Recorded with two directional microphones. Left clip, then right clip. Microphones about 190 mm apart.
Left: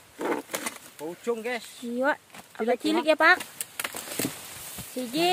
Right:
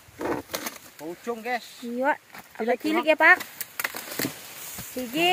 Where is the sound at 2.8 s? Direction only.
10° left (ahead or behind).